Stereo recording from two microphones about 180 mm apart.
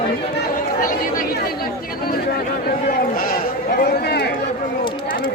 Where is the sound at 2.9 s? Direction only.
55° left (ahead or behind).